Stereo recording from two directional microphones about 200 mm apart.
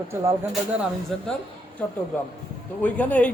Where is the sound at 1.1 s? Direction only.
Centre (ahead or behind).